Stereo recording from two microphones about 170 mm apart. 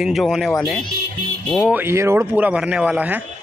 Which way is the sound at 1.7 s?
15° right (ahead or behind).